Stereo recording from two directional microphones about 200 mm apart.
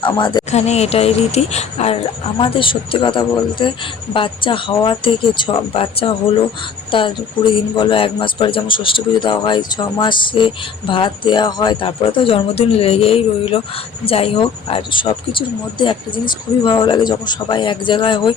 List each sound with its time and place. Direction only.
0.0 s speech: 20° left (ahead or behind)
0.5 s speech: 35° left (ahead or behind)
7.8 s speech: 25° left (ahead or behind)